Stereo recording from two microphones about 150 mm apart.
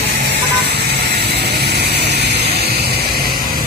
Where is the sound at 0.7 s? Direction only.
90° right.